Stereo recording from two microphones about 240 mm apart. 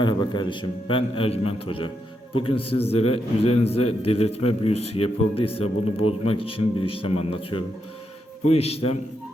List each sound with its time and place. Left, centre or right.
0.0 s a man's voice: centre